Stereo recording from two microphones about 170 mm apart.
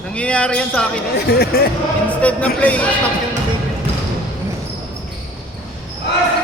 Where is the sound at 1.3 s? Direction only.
70° left (ahead or behind).